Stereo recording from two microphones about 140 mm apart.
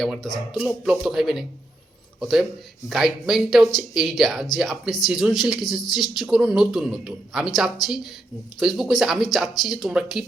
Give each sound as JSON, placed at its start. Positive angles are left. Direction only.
{"t": 0.0, "sound": "speech", "side_deg": 0}